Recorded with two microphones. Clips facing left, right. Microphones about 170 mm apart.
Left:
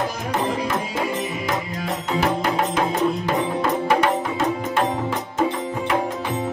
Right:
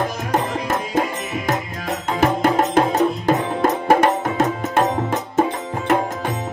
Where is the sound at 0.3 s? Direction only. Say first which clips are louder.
Right 1 dB; 50° right (ahead or behind).